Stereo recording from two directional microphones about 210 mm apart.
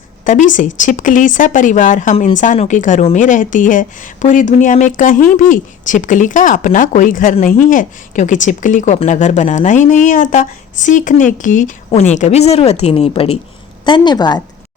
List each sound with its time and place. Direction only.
0.3 s a woman's voice: 40° left (ahead or behind); by 14.4 s 20° left (ahead or behind)